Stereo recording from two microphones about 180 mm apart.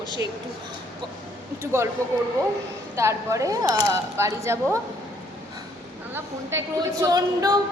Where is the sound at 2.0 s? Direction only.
15° right (ahead or behind).